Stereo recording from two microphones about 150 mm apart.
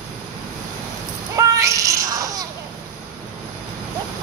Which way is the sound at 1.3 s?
20° right (ahead or behind).